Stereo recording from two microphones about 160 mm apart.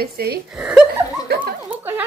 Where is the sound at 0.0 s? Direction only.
80° right.